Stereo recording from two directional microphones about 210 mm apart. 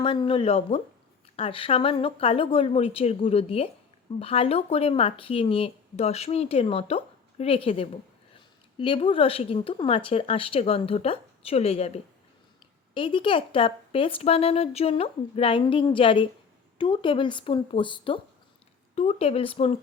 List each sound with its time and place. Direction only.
0.0 s speech: 25° left (ahead or behind)
12.9 s speech: 25° left (ahead or behind)